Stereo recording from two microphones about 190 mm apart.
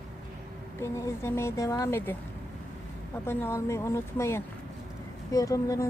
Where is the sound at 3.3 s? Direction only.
10° left (ahead or behind).